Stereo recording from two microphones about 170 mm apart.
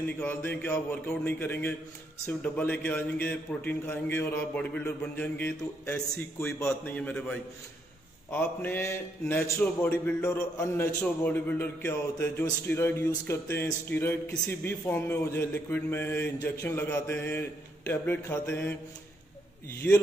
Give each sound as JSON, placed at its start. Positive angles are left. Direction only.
{"t": 0.2, "sound": "a man's voice", "side_deg": 10}
{"t": 19.8, "sound": "a man's voice", "side_deg": 10}